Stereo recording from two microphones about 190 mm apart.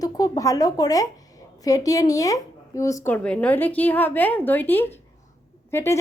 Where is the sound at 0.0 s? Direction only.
20° left (ahead or behind).